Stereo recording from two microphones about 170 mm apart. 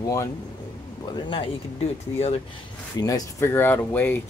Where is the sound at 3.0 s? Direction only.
20° left (ahead or behind).